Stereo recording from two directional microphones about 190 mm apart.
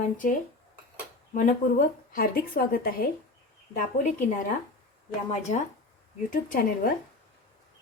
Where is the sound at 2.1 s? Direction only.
50° left (ahead or behind).